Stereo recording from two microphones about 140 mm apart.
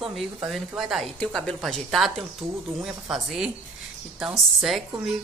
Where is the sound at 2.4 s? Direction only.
15° right (ahead or behind).